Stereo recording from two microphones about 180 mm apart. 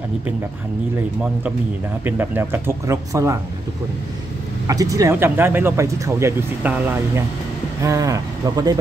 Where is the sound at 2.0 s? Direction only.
10° right (ahead or behind).